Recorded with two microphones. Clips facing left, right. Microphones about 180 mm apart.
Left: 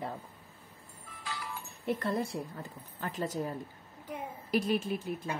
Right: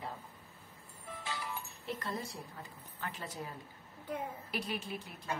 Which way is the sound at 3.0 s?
45° left (ahead or behind).